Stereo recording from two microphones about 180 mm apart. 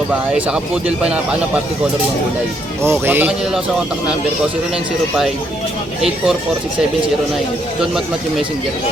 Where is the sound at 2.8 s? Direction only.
15° right (ahead or behind).